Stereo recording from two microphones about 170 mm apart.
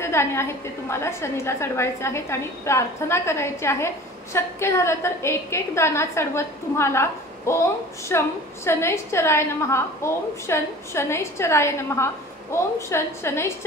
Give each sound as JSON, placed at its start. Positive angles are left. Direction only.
{"t": 0.0, "sound": "a woman's voice", "side_deg": 15}